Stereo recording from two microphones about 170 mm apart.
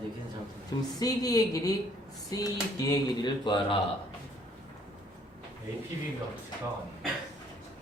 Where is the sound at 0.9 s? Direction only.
20° left (ahead or behind).